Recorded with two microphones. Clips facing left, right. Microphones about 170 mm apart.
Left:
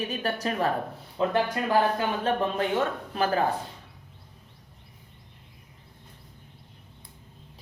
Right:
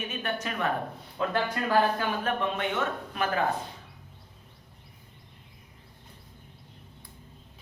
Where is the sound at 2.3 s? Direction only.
35° left (ahead or behind).